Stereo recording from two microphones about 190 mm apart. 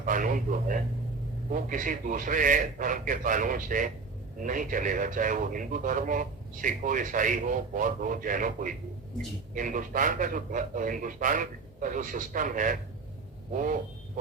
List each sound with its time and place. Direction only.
0.0 s speech: 45° right (ahead or behind)